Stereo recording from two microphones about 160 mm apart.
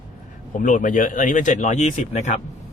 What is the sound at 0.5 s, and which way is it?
Speech, 55° left (ahead or behind).